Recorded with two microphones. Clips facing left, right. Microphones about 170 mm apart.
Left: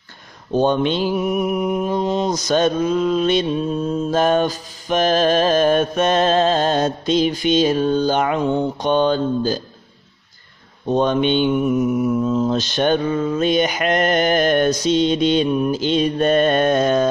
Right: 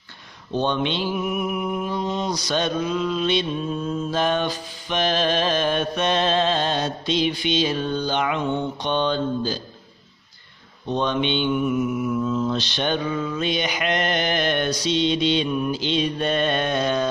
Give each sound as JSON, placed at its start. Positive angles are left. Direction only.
{"t": 0.5, "sound": "mantra", "side_deg": 40}
{"t": 10.9, "sound": "mantra", "side_deg": 45}